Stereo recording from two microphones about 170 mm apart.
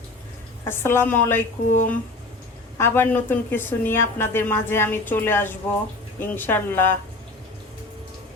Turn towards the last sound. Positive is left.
turn(degrees=10)  # may be behind; listen again after turning